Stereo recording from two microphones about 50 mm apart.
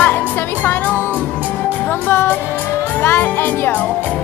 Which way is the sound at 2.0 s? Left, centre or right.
Left.